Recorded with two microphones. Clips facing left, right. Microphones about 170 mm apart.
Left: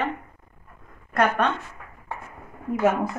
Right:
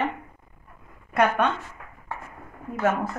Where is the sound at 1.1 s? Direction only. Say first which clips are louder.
Even; 5° right (ahead or behind).